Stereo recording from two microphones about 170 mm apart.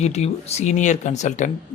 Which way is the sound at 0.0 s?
40° left (ahead or behind).